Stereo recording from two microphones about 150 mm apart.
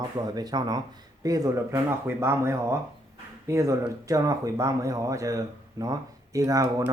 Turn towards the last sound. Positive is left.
turn(degrees=-20)  # may be behind; listen again after turning